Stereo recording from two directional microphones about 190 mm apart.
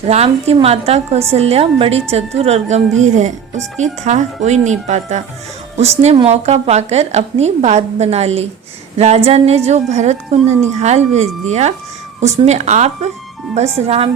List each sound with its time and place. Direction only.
0.1 s a woman's voice: 35° right (ahead or behind)